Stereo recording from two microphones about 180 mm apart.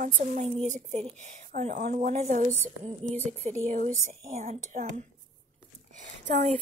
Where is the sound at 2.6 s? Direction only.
10° left (ahead or behind).